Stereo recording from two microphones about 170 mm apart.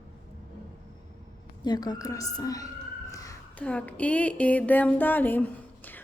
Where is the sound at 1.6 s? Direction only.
25° left (ahead or behind).